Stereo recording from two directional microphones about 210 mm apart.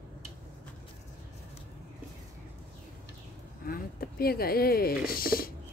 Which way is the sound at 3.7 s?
45° left (ahead or behind).